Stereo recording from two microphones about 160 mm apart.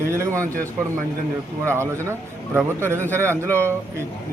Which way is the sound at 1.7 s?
15° right (ahead or behind).